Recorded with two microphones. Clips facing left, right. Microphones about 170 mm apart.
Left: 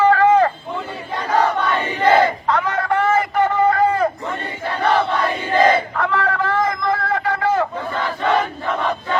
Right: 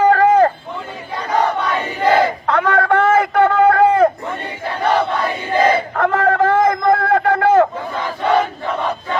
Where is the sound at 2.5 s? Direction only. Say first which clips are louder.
Right 4 dB; 55° right (ahead or behind).